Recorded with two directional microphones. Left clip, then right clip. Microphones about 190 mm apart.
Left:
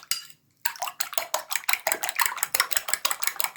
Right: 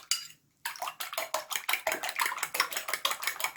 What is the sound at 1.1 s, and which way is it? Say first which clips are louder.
Cutlery: left 2 dB; 15° left (ahead or behind).